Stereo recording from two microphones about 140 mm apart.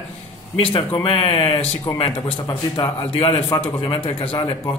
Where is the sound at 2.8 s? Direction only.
40° left (ahead or behind).